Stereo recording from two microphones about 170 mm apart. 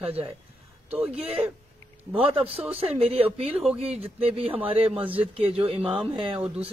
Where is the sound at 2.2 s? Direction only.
35° right (ahead or behind).